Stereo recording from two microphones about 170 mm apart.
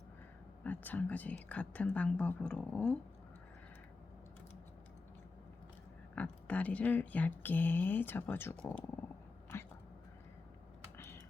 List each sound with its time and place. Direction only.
0.6 s speech: 10° left (ahead or behind)
6.1 s speech: 10° left (ahead or behind)
9.5 s a sound: 15° left (ahead or behind)